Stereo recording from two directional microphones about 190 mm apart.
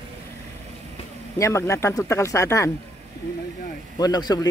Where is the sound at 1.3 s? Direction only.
15° left (ahead or behind).